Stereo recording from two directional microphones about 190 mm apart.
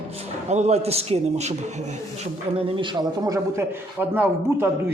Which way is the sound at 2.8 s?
20° right (ahead or behind).